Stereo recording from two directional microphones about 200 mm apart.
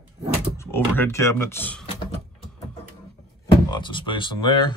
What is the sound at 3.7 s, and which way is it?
Speech, 25° left (ahead or behind).